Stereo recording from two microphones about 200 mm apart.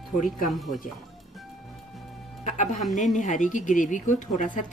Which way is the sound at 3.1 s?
40° left (ahead or behind).